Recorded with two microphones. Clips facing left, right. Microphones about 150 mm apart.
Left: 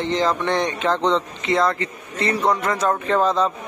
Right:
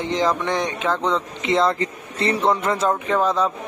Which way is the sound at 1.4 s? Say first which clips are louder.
Right 2 dB; 25° right (ahead or behind).